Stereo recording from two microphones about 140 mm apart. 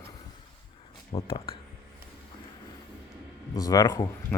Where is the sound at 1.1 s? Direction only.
40° left (ahead or behind).